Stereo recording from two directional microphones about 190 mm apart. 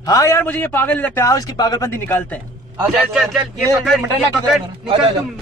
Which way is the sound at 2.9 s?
Centre (ahead or behind).